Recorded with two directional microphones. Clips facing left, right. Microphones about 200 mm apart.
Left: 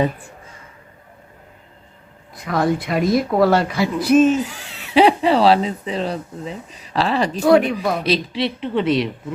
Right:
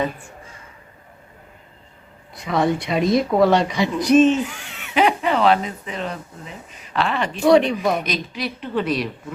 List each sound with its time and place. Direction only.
2.3 s speech: centre (ahead or behind)
4.4 s speech: 35° left (ahead or behind)
7.4 s speech: 5° left (ahead or behind)
8.0 s a woman's voice: 30° left (ahead or behind)